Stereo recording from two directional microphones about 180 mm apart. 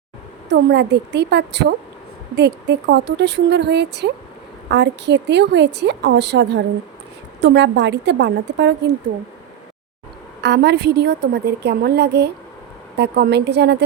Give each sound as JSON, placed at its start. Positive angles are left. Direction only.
{"t": 0.5, "sound": "a woman's voice", "side_deg": -70}
{"t": 10.4, "sound": "a woman's voice", "side_deg": -70}